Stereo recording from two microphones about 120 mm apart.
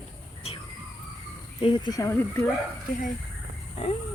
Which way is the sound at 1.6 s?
40° left (ahead or behind).